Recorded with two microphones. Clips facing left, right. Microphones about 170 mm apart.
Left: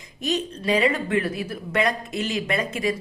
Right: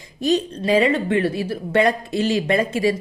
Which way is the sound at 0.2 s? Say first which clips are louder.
Right 6 dB; 35° right (ahead or behind).